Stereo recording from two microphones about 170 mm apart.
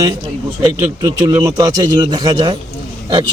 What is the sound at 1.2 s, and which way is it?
Speech, 25° right (ahead or behind).